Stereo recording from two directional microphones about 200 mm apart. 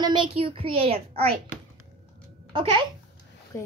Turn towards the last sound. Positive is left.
turn(degrees=15)  # may be behind; listen again after turning